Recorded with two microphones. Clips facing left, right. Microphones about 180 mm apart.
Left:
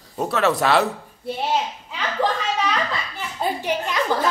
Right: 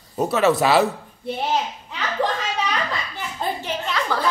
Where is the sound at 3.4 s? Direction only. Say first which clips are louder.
Left 3 dB; 15° left (ahead or behind).